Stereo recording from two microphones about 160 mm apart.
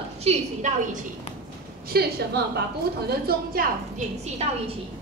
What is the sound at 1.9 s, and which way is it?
Speech, 80° right.